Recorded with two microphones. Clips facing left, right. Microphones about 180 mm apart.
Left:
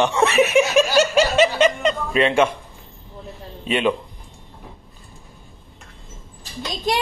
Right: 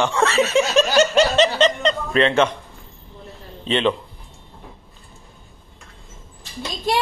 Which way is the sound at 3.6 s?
10° left (ahead or behind).